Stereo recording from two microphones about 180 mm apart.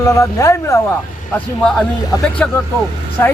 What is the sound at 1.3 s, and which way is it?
A man's voice, 5° left (ahead or behind).